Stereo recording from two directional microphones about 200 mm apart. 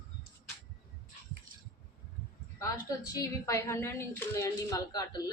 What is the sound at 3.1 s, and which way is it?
A woman's voice, 15° left (ahead or behind).